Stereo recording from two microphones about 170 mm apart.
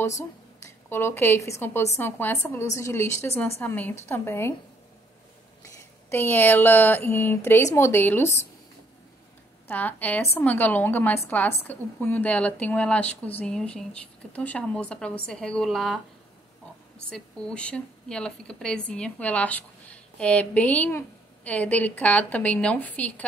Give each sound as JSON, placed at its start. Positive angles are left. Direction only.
{"t": 0.8, "sound": "speech", "side_deg": 15}
{"t": 5.8, "sound": "speech", "side_deg": 15}
{"t": 9.7, "sound": "speech", "side_deg": 10}
{"t": 17.1, "sound": "speech", "side_deg": 5}